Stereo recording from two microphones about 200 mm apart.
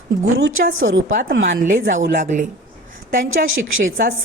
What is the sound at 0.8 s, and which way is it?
Speech, 80° right.